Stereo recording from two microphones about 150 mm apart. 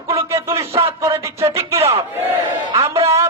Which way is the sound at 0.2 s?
15° right (ahead or behind).